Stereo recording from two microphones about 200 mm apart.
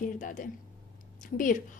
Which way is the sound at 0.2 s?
40° left (ahead or behind).